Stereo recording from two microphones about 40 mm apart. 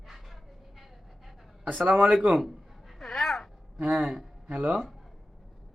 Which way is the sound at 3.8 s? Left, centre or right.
Centre.